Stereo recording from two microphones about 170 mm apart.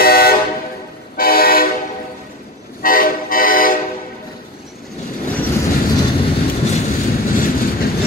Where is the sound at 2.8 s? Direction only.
55° left (ahead or behind).